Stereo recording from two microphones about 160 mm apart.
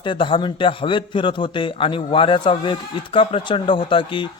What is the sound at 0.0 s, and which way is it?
A man's voice, 30° left (ahead or behind).